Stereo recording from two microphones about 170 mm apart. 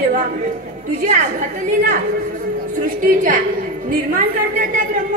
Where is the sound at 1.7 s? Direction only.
50° right (ahead or behind).